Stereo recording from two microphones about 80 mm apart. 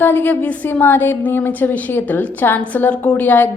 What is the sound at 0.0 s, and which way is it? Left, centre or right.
A woman's voice, left.